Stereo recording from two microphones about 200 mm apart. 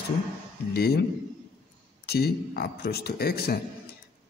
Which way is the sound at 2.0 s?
50° left (ahead or behind).